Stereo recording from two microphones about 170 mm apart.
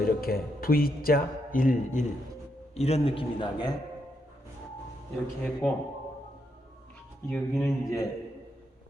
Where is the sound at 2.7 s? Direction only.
35° left (ahead or behind).